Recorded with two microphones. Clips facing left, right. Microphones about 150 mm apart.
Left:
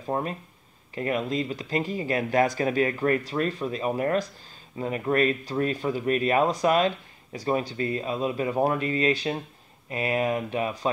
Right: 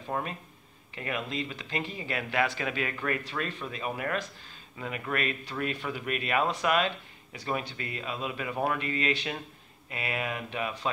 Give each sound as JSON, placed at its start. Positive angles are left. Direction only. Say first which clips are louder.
{"t": 0.1, "sound": "speech", "louder": "left 5 dB", "side_deg": 35}